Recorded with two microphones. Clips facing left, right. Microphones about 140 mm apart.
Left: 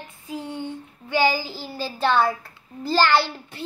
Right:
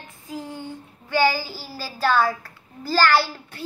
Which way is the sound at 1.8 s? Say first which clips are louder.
Even; 25° left (ahead or behind).